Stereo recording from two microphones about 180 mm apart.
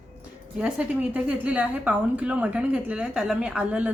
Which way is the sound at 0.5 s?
5° right (ahead or behind).